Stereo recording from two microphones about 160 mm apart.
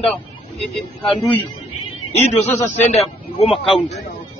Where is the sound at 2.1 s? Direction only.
45° left (ahead or behind).